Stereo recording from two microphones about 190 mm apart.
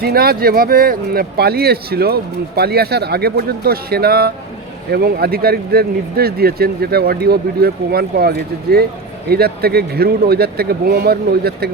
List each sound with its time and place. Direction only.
0.0 s speech: 55° right (ahead or behind)